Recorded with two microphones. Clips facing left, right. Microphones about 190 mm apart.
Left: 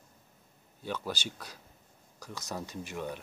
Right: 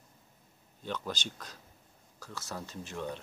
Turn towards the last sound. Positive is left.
turn(degrees=10)  # may be behind; listen again after turning